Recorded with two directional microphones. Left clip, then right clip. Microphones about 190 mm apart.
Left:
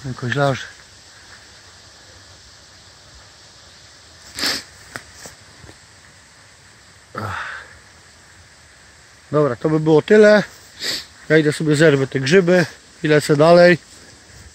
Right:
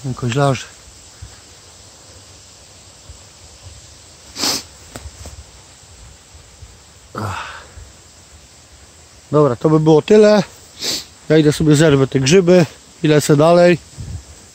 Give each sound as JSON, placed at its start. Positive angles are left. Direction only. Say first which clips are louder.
{"t": 0.3, "sound": "speech", "louder": "right 2 dB", "side_deg": -5}
{"t": 4.4, "sound": "sniff", "louder": "right 2 dB", "side_deg": -15}
{"t": 7.2, "sound": "cricket", "louder": "right 1 dB", "side_deg": -10}
{"t": 9.3, "sound": "speech", "louder": "right 4 dB", "side_deg": -5}